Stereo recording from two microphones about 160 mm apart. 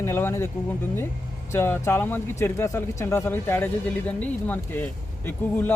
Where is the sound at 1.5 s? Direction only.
15° left (ahead or behind).